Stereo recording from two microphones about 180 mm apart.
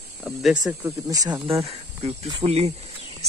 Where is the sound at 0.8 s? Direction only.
20° right (ahead or behind).